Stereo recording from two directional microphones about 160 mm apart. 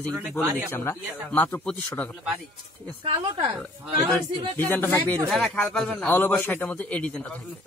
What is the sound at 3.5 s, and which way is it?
Speech, 5° right (ahead or behind).